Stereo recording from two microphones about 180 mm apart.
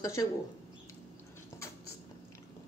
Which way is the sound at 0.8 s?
15° left (ahead or behind).